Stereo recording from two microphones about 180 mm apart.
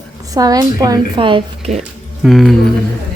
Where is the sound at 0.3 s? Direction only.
20° right (ahead or behind).